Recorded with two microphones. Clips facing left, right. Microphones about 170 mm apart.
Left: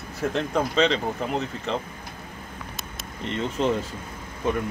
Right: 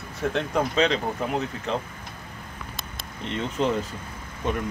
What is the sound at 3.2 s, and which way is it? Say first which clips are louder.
Speech: left 1 dB; centre (ahead or behind).